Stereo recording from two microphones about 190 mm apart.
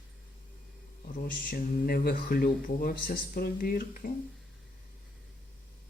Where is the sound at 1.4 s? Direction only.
50° left (ahead or behind).